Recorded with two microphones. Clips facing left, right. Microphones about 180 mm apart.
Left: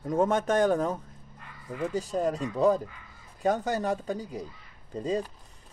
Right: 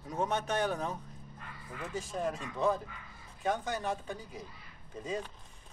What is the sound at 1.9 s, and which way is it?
Speech, 35° left (ahead or behind).